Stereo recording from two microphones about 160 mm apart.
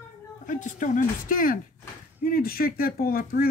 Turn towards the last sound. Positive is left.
turn(degrees=65)  # may be behind; listen again after turning